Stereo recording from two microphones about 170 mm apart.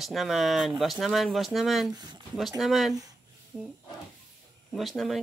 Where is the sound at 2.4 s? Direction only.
Centre (ahead or behind).